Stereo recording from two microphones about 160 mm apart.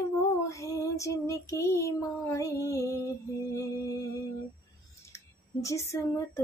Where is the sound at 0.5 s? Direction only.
20° left (ahead or behind).